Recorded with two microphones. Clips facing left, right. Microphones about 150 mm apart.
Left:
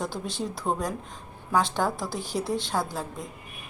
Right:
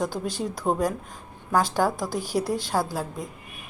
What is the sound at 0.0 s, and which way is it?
A woman's voice, centre (ahead or behind).